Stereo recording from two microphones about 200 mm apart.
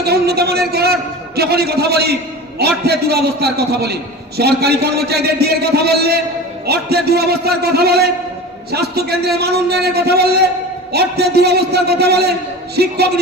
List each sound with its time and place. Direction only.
0.0 s a man's voice: 55° right (ahead or behind)